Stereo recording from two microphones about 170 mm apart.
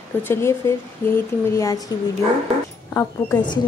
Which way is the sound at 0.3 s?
15° left (ahead or behind).